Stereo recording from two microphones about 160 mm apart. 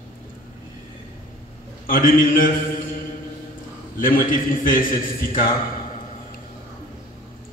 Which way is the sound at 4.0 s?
60° left (ahead or behind).